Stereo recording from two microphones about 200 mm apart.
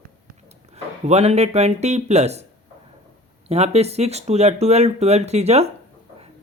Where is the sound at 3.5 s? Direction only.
30° right (ahead or behind).